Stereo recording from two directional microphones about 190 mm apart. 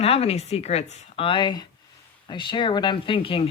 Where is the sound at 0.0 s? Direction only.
30° left (ahead or behind).